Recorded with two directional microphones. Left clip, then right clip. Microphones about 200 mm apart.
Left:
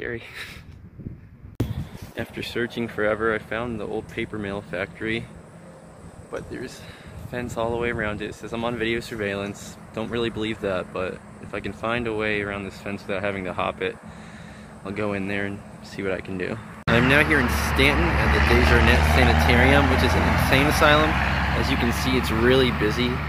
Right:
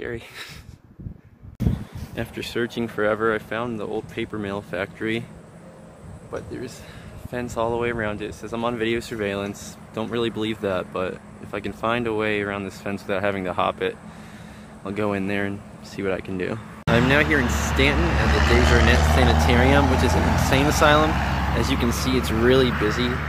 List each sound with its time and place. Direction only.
0.0 s speech: 10° right (ahead or behind)
2.1 s speech: 20° right (ahead or behind)
6.3 s speech: 10° right (ahead or behind)
16.8 s speech: centre (ahead or behind)
18.2 s speech: 20° right (ahead or behind)
18.6 s speech: 10° right (ahead or behind)
21.1 s vehicle: 15° right (ahead or behind)
21.8 s speech: 10° right (ahead or behind)
22.8 s speech: 35° left (ahead or behind)